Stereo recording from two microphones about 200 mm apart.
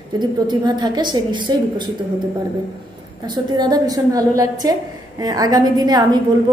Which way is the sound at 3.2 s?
20° right (ahead or behind).